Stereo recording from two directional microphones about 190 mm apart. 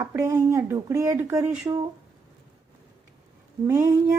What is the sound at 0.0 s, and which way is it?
A woman's voice, 15° right (ahead or behind).